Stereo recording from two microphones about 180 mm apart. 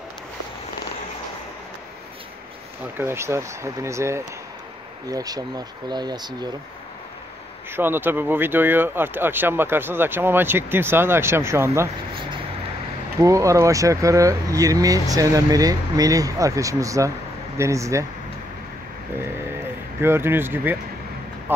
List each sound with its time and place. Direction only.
2.8 s speech: 15° right (ahead or behind)
7.7 s speech: 10° right (ahead or behind)
13.2 s speech: 15° right (ahead or behind)
20.0 s speech: 15° right (ahead or behind)